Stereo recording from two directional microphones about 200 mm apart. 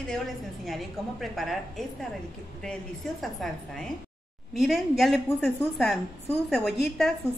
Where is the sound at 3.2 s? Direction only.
Centre (ahead or behind).